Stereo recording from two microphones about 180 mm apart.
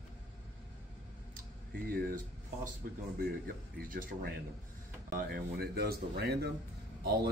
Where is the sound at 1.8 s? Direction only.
60° right (ahead or behind).